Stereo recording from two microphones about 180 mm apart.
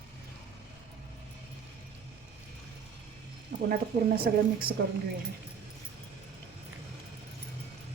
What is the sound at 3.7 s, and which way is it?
A woman's voice, 60° right (ahead or behind).